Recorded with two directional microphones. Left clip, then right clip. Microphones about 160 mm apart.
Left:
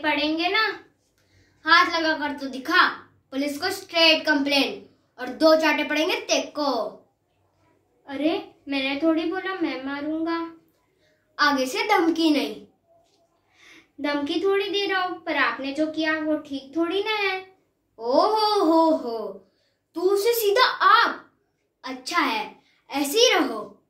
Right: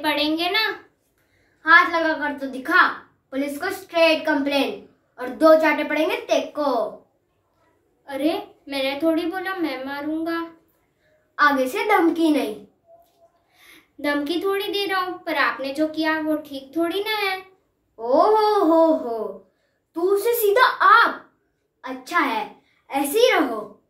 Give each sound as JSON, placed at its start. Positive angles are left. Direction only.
{"t": 0.0, "sound": "a woman's voice", "side_deg": 30}
{"t": 1.6, "sound": "a child's voice", "side_deg": -5}
{"t": 8.0, "sound": "a woman's voice", "side_deg": 25}
{"t": 11.3, "sound": "a child's voice", "side_deg": -10}
{"t": 13.6, "sound": "a woman's voice", "side_deg": 25}
{"t": 17.9, "sound": "babbling", "side_deg": -5}